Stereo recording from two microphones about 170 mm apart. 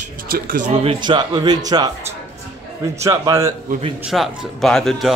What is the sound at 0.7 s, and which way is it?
Speech, 35° right (ahead or behind).